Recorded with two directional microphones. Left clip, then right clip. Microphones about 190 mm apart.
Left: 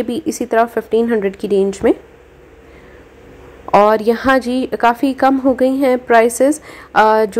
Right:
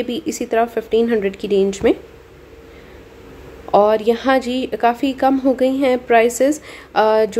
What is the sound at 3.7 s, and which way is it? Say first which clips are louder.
Speech: left 3 dB; 15° left (ahead or behind).